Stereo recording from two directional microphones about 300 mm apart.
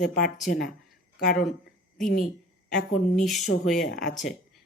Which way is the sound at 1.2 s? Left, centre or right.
Left.